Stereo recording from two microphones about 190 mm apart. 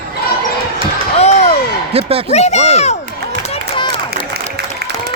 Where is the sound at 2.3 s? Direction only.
35° left (ahead or behind).